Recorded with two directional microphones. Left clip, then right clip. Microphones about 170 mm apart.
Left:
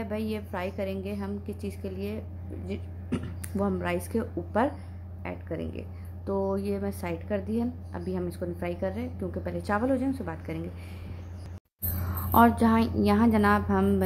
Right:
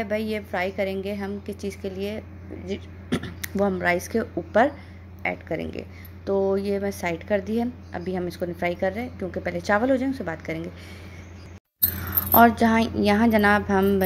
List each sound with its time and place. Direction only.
0.0 s a woman's voice: 15° right (ahead or behind)
12.3 s a woman's voice: 10° right (ahead or behind)